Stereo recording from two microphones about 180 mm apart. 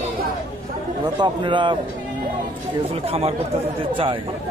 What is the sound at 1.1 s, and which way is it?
Speech, 25° right (ahead or behind).